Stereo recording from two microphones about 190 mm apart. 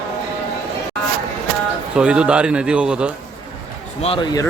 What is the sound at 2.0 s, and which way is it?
Speech, 5° right (ahead or behind).